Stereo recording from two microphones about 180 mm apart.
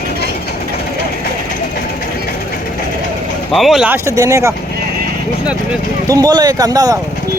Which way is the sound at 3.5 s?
Centre (ahead or behind).